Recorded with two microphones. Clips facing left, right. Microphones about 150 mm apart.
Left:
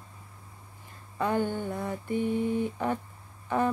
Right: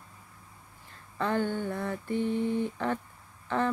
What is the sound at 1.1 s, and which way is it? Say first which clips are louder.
Mantra: left 1 dB; 15° left (ahead or behind).